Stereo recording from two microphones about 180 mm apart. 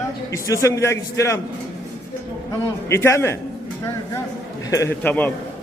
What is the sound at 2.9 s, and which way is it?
Speech, 15° left (ahead or behind).